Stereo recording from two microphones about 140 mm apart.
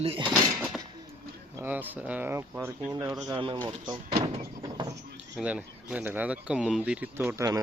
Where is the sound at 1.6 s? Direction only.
15° right (ahead or behind).